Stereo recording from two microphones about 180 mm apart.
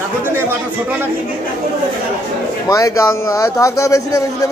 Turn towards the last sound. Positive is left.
turn(degrees=20)  # may be behind; listen again after turning